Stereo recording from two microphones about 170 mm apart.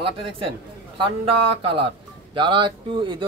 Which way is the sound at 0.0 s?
30° right (ahead or behind).